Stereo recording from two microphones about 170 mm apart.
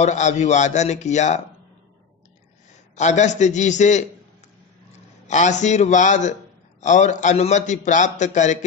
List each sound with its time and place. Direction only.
0.0 s a man's voice: 45° left (ahead or behind)
3.0 s a man's voice: 45° left (ahead or behind)
5.2 s a man's voice: 45° left (ahead or behind)